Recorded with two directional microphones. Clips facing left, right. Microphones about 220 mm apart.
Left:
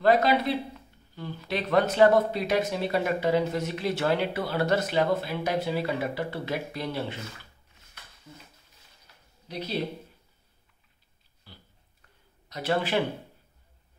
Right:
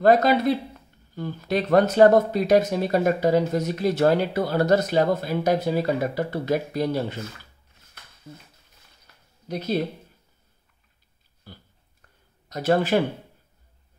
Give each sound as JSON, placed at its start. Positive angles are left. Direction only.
{"t": 0.0, "sound": "speech", "side_deg": -45}
{"t": 9.5, "sound": "speech", "side_deg": -45}
{"t": 11.5, "sound": "a sound", "side_deg": -50}
{"t": 12.4, "sound": "speech", "side_deg": -45}